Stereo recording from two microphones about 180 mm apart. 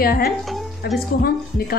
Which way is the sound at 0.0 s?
55° left (ahead or behind).